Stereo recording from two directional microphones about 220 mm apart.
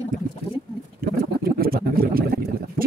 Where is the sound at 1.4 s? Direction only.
45° right (ahead or behind).